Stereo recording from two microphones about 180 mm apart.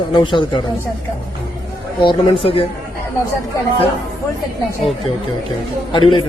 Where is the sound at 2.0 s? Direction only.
30° left (ahead or behind).